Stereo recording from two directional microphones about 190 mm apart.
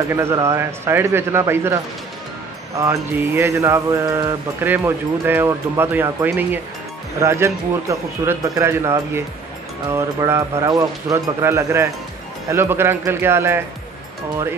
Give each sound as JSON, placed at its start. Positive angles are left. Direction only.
{"t": 0.1, "sound": "mantra", "side_deg": -15}
{"t": 2.8, "sound": "mantra", "side_deg": -15}